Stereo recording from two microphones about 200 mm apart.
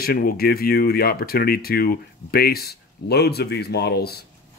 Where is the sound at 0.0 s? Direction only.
50° left (ahead or behind).